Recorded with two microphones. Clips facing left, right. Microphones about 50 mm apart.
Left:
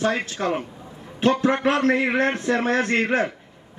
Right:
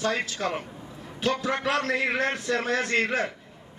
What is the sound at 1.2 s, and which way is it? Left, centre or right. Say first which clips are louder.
A man's voice: left 7 dB; left.